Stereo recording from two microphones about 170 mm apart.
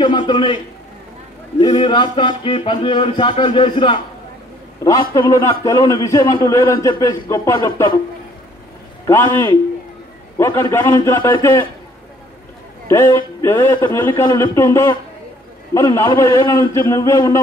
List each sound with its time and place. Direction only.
0.0 s a man's voice: 25° left (ahead or behind)
1.8 s a man's voice: 25° left (ahead or behind)
9.0 s a man's voice: 15° left (ahead or behind)
12.8 s a man's voice: 15° left (ahead or behind)